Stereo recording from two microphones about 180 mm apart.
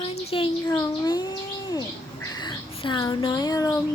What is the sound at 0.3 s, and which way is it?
Speech, 30° left (ahead or behind).